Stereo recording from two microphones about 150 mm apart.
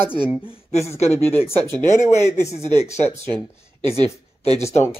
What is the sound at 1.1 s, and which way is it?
Speech, 15° left (ahead or behind).